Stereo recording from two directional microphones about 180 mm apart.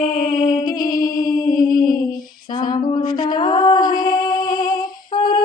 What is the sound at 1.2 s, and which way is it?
Music, 50° left (ahead or behind).